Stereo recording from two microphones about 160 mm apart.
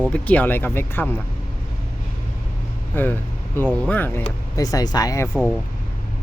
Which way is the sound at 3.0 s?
10° left (ahead or behind).